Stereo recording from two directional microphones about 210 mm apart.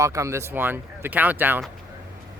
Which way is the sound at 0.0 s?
15° right (ahead or behind).